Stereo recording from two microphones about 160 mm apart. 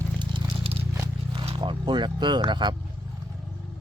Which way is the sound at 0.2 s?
35° right (ahead or behind).